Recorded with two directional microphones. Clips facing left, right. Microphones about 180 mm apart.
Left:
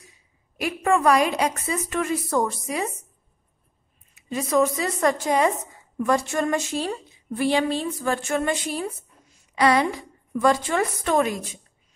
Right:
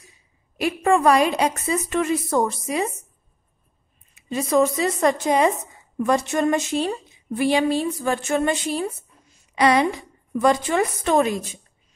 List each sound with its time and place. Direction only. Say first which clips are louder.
0.6 s a woman's voice: right 3 dB; 25° right (ahead or behind)
4.1 s a woman's voice: right 2 dB; 25° right (ahead or behind)